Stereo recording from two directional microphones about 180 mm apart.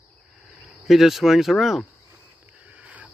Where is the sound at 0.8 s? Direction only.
Centre (ahead or behind).